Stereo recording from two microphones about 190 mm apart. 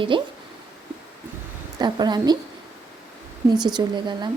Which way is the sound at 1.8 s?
20° right (ahead or behind).